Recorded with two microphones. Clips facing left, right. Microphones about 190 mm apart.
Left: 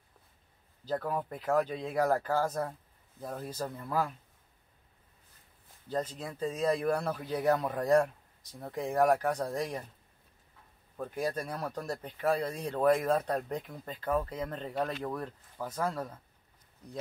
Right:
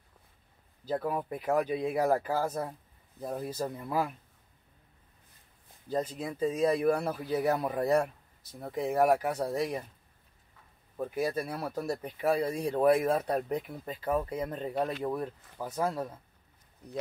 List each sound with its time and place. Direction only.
0.8 s speech: 10° right (ahead or behind)
5.9 s speech: 10° right (ahead or behind)
11.0 s speech: 10° right (ahead or behind)